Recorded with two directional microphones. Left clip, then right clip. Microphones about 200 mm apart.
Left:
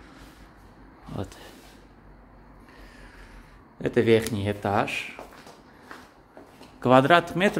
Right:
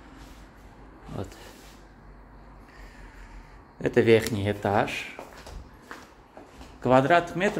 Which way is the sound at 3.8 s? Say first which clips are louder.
Right 1 dB; centre (ahead or behind).